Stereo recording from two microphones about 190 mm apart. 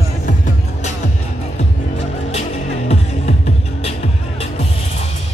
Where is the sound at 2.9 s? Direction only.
35° left (ahead or behind).